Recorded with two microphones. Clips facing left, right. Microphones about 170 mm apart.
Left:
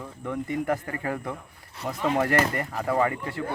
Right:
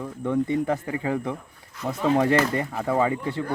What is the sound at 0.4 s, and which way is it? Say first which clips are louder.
Speech: right 3 dB; 25° right (ahead or behind).